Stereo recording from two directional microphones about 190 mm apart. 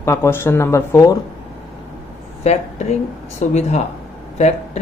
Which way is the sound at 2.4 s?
35° left (ahead or behind).